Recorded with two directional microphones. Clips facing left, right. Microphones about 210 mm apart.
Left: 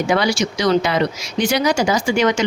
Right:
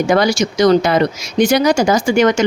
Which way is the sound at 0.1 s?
45° right (ahead or behind).